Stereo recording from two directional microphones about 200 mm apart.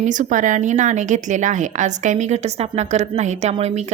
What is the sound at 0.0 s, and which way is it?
A woman's voice, 40° right (ahead or behind).